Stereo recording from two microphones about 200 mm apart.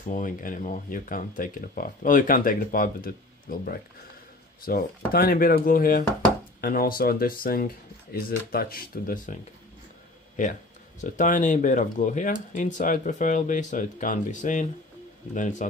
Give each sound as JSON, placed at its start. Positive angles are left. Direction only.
{"t": 0.1, "sound": "speech", "side_deg": 45}
{"t": 11.0, "sound": "speech", "side_deg": 40}